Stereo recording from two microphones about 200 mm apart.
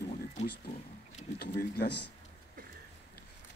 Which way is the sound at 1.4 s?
50° left (ahead or behind).